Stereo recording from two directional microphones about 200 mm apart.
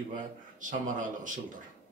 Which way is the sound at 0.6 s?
40° right (ahead or behind).